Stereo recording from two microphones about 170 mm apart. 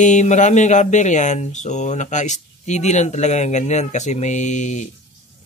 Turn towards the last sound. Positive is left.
turn(degrees=45)  # may be behind; listen again after turning